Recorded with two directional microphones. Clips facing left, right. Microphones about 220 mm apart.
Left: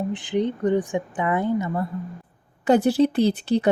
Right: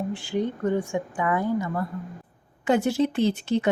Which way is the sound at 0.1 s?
20° left (ahead or behind).